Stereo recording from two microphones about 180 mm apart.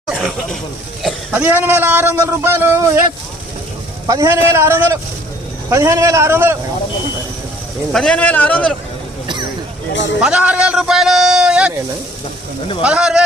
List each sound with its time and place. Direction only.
0.1 s a sound: 5° right (ahead or behind)
1.0 s a man's voice: 10° right (ahead or behind)
4.0 s a man's voice: 20° right (ahead or behind)
7.9 s a man's voice: 5° left (ahead or behind)
10.2 s a man's voice: 5° right (ahead or behind)
12.8 s a man's voice: 5° right (ahead or behind)